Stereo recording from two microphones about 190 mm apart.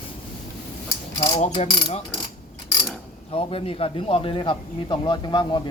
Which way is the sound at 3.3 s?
30° left (ahead or behind).